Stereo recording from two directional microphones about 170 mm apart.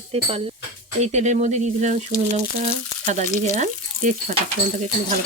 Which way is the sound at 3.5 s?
50° right (ahead or behind).